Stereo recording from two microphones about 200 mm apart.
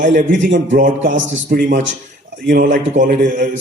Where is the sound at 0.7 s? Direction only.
40° right (ahead or behind).